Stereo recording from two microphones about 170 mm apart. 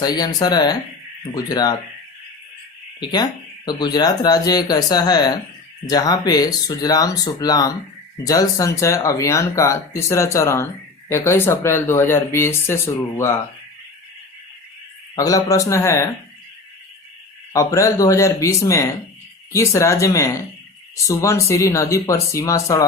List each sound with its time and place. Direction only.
0.0 s speech: 25° left (ahead or behind)
3.0 s speech: 25° left (ahead or behind)
15.1 s speech: 20° left (ahead or behind)
17.5 s speech: 20° left (ahead or behind)